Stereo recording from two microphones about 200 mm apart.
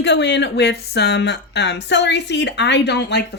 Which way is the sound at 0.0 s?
60° left (ahead or behind).